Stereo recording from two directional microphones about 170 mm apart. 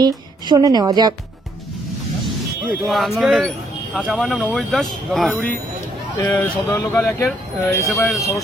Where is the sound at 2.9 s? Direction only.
Centre (ahead or behind); by 7.2 s 15° left (ahead or behind).